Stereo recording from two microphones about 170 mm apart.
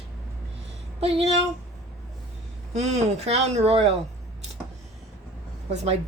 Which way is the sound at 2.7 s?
40° right (ahead or behind).